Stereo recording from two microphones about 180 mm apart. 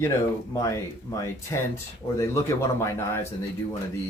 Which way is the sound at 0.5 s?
15° left (ahead or behind).